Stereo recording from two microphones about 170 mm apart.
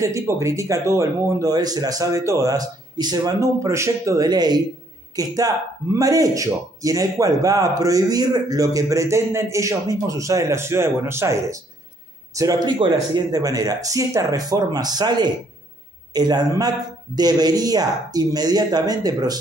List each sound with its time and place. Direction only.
0.0 s speech: 20° right (ahead or behind)